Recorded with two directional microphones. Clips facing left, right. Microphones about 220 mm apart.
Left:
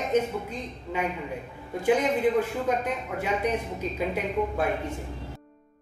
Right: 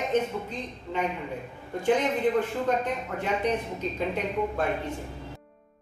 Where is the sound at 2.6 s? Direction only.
10° left (ahead or behind).